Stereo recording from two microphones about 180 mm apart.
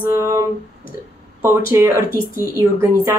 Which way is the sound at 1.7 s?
15° right (ahead or behind).